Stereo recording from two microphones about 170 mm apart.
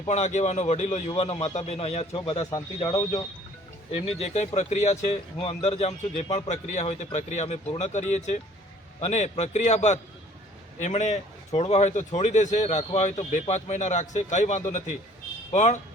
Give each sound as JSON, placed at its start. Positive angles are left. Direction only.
{"t": 0.1, "sound": "speech", "side_deg": 45}
{"t": 2.5, "sound": "speech", "side_deg": 20}
{"t": 4.2, "sound": "speech", "side_deg": 40}